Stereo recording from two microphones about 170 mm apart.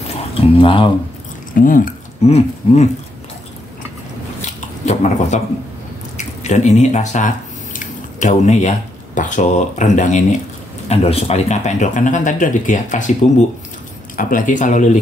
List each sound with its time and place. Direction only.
0.1 s speech: 30° left (ahead or behind)
1.5 s speech: 55° left (ahead or behind)
4.8 s speech: 40° left (ahead or behind)